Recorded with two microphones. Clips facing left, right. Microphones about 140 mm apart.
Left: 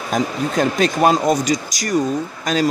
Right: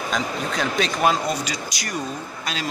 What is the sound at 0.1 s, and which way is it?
Speech, 50° left (ahead or behind).